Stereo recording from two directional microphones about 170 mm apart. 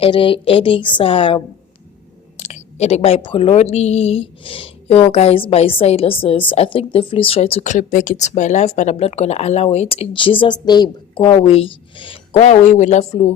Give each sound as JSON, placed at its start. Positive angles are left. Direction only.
{"t": 0.0, "sound": "speech", "side_deg": 30}
{"t": 2.4, "sound": "speech", "side_deg": 40}